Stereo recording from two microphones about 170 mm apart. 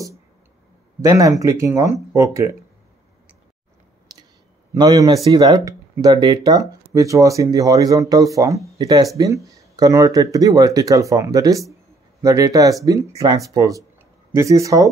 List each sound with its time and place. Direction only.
1.0 s speech: 20° right (ahead or behind)
4.1 s clicking: 20° right (ahead or behind)
4.7 s speech: 20° right (ahead or behind)